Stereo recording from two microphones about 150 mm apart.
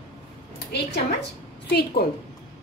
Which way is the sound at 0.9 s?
90° left.